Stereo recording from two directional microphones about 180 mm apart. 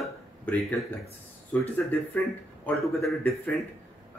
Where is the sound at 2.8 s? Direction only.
15° left (ahead or behind).